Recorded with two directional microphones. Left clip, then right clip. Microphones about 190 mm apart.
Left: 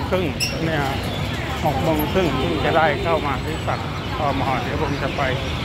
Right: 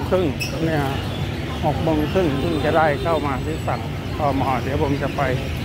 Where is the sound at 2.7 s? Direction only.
10° right (ahead or behind).